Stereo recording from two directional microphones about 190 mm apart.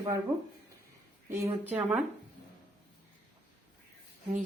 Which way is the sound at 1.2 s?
15° right (ahead or behind).